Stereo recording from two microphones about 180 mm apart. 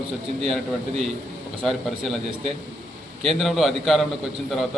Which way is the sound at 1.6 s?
Centre (ahead or behind).